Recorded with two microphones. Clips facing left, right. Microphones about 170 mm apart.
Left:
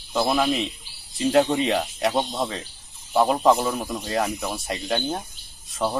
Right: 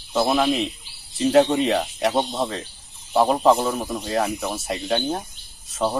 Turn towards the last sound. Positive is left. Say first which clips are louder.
# right 2 dB
turn(degrees=0)  # may be behind; listen again after turning